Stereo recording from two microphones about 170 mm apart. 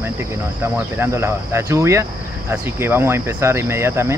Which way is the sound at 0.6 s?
15° right (ahead or behind).